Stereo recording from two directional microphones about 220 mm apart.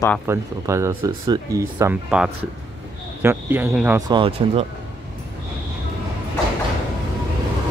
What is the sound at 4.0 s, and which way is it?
Speech, 20° right (ahead or behind).